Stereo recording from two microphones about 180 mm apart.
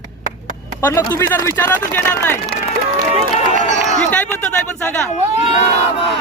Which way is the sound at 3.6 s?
45° right (ahead or behind).